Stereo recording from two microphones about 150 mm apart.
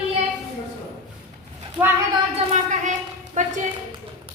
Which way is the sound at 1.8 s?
10° right (ahead or behind).